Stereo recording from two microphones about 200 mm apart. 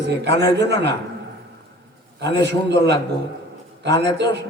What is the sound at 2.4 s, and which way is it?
A man's voice, 60° right (ahead or behind).